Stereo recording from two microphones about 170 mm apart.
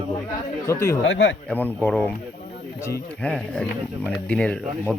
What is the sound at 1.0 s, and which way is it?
Speech, 90° left.